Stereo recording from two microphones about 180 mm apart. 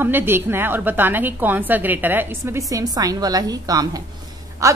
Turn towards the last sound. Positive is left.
turn(degrees=-15)  # may be behind; listen again after turning